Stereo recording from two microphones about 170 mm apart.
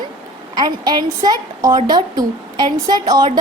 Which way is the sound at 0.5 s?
25° right (ahead or behind).